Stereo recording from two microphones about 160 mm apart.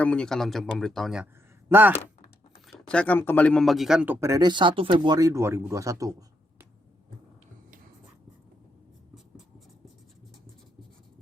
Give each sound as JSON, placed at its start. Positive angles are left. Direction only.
{"t": 0.0, "sound": "speech", "side_deg": 5}
{"t": 2.6, "sound": "a man's voice", "side_deg": 5}